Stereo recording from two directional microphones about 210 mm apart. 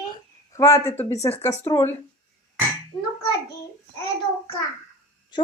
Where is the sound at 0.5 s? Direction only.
15° left (ahead or behind).